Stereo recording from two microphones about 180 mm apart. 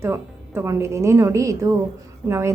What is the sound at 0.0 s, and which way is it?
A woman's voice, 15° right (ahead or behind).